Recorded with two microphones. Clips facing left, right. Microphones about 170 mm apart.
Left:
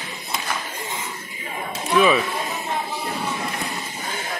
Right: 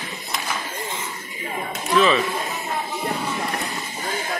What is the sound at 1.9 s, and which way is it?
Speech, 10° left (ahead or behind).